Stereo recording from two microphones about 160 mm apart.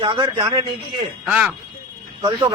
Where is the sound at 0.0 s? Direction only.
30° right (ahead or behind).